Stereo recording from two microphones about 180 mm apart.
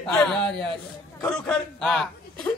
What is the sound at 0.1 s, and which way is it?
A woman's voice, 5° left (ahead or behind).